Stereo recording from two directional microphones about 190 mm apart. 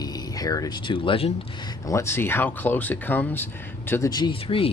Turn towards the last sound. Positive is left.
turn(degrees=30)  # may be behind; listen again after turning